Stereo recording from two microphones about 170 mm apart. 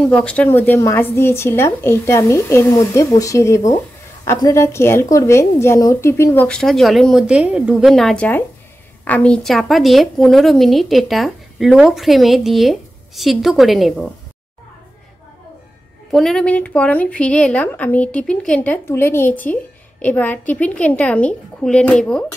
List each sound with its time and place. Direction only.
0.0 s a woman's voice: 5° left (ahead or behind)
16.1 s a woman's voice: centre (ahead or behind)